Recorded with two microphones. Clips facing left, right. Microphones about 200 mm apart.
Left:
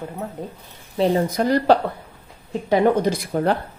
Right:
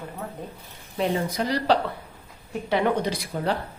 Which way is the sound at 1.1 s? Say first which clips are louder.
Left 7 dB; 45° left (ahead or behind).